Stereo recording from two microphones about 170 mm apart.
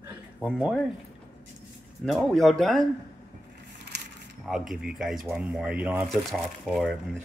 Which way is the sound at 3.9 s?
80° right.